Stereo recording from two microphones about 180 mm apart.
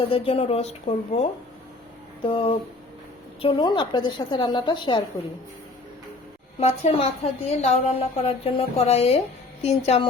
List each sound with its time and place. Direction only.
0.1 s a woman's voice: 35° left (ahead or behind)
6.6 s a woman's voice: 35° left (ahead or behind)